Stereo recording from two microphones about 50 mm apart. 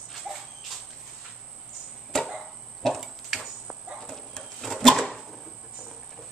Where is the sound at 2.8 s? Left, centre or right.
Centre.